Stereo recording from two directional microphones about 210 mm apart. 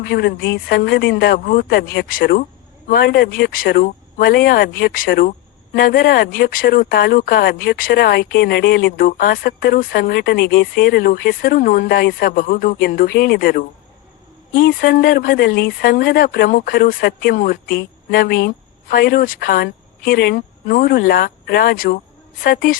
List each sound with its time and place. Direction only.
0.1 s speech: 50° left (ahead or behind)